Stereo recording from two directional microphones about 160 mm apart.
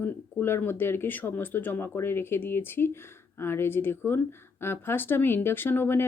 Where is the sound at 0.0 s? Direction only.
15° left (ahead or behind).